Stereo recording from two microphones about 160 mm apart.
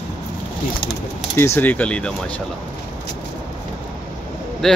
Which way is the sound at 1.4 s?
15° left (ahead or behind).